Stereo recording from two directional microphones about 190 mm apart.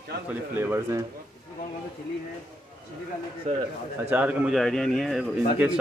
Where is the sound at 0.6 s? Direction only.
15° right (ahead or behind).